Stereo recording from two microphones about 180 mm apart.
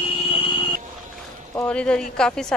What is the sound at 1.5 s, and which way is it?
Speech, 10° left (ahead or behind).